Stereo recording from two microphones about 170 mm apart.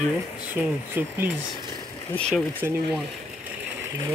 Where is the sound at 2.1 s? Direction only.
5° left (ahead or behind).